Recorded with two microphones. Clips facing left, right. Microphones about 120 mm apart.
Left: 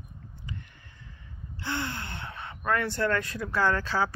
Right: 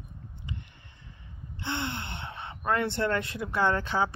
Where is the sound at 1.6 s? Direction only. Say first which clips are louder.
Even; 20° right (ahead or behind).